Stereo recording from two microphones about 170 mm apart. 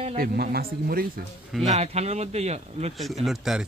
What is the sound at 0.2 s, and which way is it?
Speech, 65° right (ahead or behind).